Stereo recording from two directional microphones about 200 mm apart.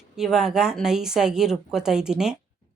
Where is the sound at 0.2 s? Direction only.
Centre (ahead or behind).